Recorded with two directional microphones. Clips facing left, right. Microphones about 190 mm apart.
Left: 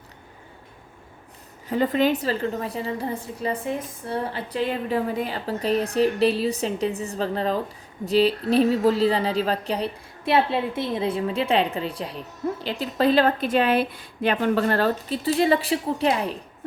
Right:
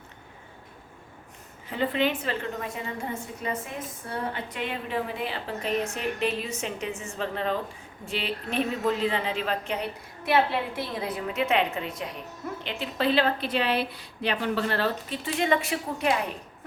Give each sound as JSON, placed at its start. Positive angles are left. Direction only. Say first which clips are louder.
{"t": 1.6, "sound": "a woman's voice", "louder": "left 5 dB", "side_deg": 40}